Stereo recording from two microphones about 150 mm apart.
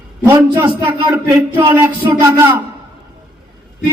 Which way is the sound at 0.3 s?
20° right (ahead or behind).